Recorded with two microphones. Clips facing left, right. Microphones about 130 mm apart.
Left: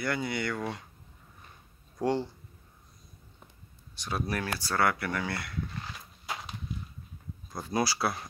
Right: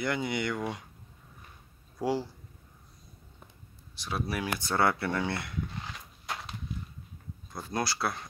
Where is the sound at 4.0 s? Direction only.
5° right (ahead or behind).